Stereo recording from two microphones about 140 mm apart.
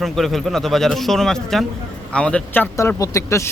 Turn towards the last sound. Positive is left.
turn(degrees=20)  # may be behind; listen again after turning